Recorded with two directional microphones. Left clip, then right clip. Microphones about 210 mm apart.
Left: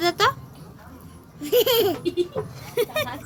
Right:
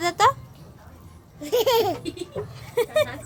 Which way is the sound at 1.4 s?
25° right (ahead or behind).